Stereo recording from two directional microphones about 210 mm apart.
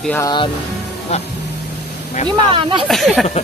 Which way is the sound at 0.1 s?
20° left (ahead or behind).